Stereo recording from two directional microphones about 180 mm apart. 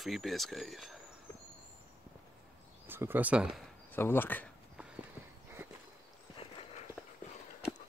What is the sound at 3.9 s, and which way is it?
Speech, 10° left (ahead or behind).